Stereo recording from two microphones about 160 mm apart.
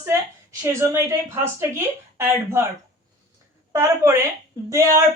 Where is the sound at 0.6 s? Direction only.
15° right (ahead or behind).